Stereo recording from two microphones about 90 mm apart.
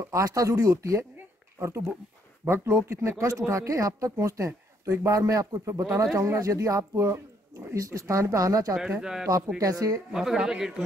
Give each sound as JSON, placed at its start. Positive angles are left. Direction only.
{"t": 0.1, "sound": "speech", "side_deg": -35}
{"t": 9.0, "sound": "speech", "side_deg": -5}
{"t": 9.6, "sound": "speech", "side_deg": -40}
{"t": 10.1, "sound": "speech", "side_deg": -5}